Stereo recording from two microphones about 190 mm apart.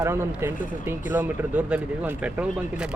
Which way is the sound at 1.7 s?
5° right (ahead or behind).